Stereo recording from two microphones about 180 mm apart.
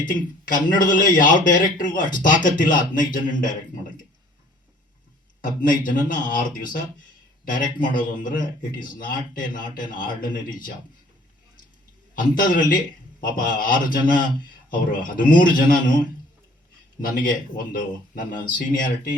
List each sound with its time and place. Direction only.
0.0 s speech: 50° left (ahead or behind)
5.4 s speech: 50° left (ahead or behind)
12.1 s speech: 50° left (ahead or behind)
17.0 s speech: 50° left (ahead or behind)